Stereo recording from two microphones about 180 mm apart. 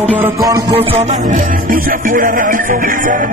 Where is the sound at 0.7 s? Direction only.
30° right (ahead or behind).